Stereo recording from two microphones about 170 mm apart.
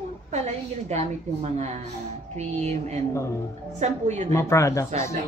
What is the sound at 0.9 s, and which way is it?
A woman's voice, 40° right (ahead or behind).